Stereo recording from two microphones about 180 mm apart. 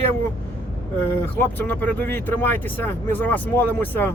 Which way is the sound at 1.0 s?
10° left (ahead or behind).